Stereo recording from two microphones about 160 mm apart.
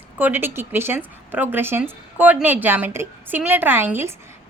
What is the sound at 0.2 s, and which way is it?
A woman's voice, 10° right (ahead or behind).